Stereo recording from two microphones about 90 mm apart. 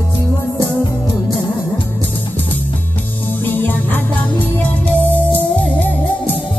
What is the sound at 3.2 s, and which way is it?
Music, 20° left (ahead or behind).